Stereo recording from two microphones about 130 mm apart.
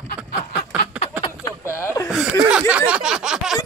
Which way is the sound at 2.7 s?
10° right (ahead or behind).